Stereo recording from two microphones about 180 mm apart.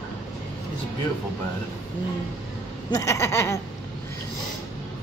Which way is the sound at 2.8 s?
15° left (ahead or behind).